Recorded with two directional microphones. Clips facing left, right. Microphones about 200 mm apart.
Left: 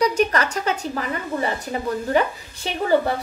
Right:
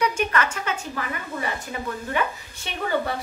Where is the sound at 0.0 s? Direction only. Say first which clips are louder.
Left 4 dB; 35° left (ahead or behind).